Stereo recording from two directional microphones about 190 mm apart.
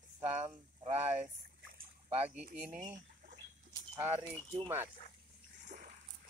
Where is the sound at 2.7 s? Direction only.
40° right (ahead or behind).